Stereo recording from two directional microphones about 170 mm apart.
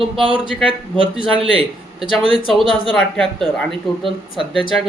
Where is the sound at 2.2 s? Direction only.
30° left (ahead or behind).